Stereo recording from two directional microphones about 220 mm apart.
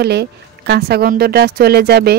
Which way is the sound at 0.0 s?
50° right (ahead or behind).